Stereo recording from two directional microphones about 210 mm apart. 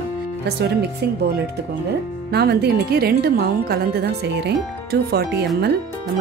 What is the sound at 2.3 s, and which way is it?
A woman's voice, 50° right (ahead or behind).